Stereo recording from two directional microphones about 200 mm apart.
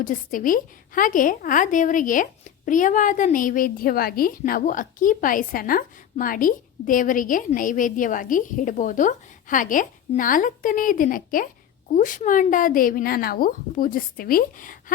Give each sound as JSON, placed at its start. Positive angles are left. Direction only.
{"t": 0.0, "sound": "a woman's voice", "side_deg": 40}